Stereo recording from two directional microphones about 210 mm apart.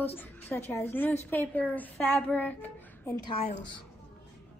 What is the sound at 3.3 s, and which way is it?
Speech, 30° left (ahead or behind).